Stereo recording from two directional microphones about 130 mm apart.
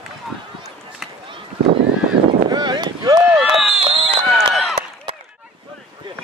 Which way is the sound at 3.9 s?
40° right (ahead or behind).